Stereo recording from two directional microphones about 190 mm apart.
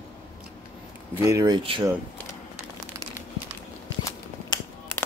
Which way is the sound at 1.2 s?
15° right (ahead or behind).